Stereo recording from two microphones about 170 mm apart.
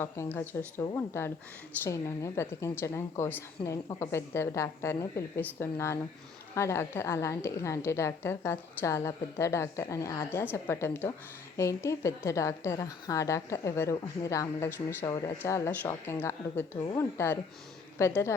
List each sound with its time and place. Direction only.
0.0 s a woman's voice: 15° left (ahead or behind)